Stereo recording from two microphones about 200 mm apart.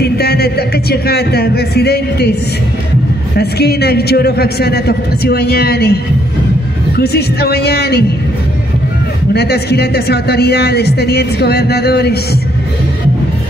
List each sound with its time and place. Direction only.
0.0 s speech: 50° left (ahead or behind)
3.3 s a woman's voice: 55° left (ahead or behind)
7.0 s a woman's voice: 50° left (ahead or behind)
9.3 s a woman's voice: 55° left (ahead or behind)